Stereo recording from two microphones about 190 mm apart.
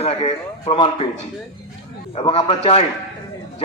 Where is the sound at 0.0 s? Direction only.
30° left (ahead or behind).